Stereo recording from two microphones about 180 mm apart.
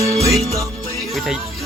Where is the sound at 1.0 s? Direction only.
Centre (ahead or behind).